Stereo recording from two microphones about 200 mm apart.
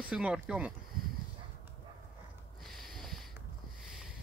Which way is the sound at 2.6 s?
Centre (ahead or behind).